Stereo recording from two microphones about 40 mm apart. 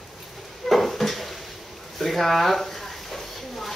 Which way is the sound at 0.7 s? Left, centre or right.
Centre.